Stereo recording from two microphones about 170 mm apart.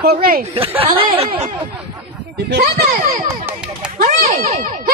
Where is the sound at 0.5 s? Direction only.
35° right (ahead or behind).